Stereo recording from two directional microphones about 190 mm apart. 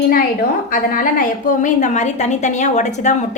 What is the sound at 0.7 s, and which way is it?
A woman's voice, 45° left (ahead or behind).